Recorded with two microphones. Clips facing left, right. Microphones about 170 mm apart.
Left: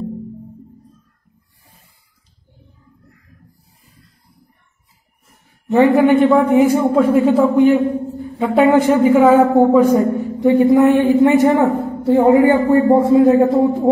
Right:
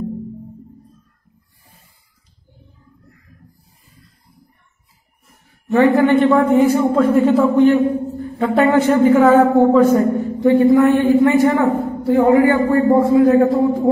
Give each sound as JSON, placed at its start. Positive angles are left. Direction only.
{"t": 5.7, "sound": "a man's voice", "side_deg": 20}